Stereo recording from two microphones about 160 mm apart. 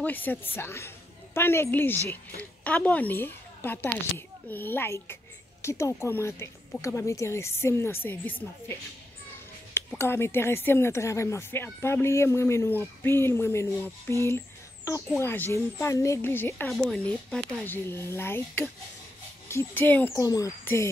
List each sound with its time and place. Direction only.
0.0 s a woman's voice: 10° left (ahead or behind)
9.9 s speech: 15° left (ahead or behind)